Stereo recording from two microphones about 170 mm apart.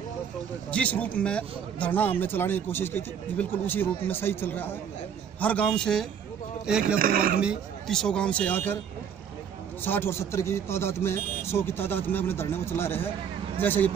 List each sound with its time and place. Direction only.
0.7 s a man's voice: 10° left (ahead or behind)
7.0 s speech: 60° right (ahead or behind)
7.3 s a man's voice: centre (ahead or behind)
9.8 s a man's voice: 15° left (ahead or behind)